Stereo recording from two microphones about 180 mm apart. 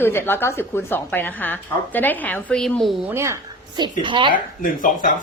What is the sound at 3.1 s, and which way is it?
A woman's voice, 15° right (ahead or behind).